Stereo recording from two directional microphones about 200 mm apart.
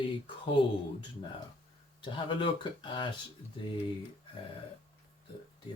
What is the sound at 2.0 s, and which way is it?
Speech, 25° left (ahead or behind).